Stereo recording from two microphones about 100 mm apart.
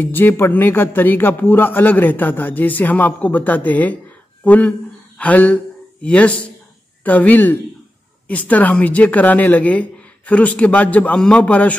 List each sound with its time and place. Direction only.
0.0 s a man's voice: 20° left (ahead or behind)